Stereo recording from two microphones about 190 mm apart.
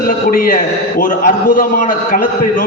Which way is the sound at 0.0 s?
50° left (ahead or behind).